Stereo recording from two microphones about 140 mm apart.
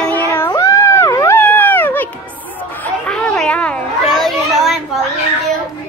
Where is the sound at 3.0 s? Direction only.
5° left (ahead or behind).